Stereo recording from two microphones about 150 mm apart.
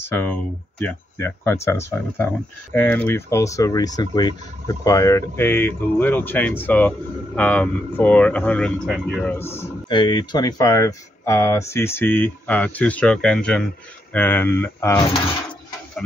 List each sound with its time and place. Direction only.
0.0 s speech: 10° left (ahead or behind)
9.8 s speech: 30° left (ahead or behind)